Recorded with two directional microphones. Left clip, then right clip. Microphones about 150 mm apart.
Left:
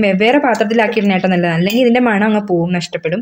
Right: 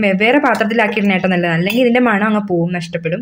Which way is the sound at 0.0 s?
5° left (ahead or behind).